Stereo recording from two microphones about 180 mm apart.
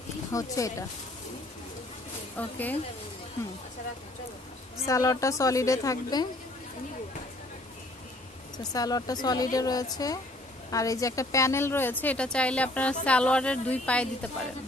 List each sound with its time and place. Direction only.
0.3 s speech: 20° left (ahead or behind)
4.8 s speech: 15° left (ahead or behind)
8.7 s a woman's voice: 20° left (ahead or behind)